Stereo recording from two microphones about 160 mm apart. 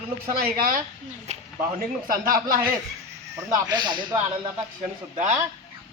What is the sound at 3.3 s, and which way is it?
Speech, 25° right (ahead or behind).